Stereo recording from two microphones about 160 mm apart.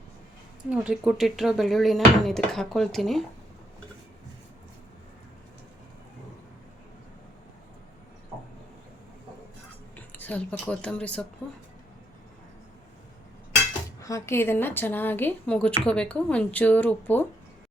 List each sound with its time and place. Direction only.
0.7 s speech: 5° right (ahead or behind)
9.9 s speech: 10° left (ahead or behind)
14.0 s a woman's voice: 20° left (ahead or behind)